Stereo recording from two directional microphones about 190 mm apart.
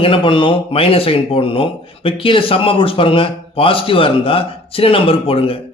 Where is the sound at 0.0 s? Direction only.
25° left (ahead or behind).